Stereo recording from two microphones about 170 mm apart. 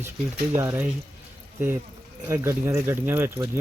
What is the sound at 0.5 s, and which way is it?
Speech, 15° right (ahead or behind).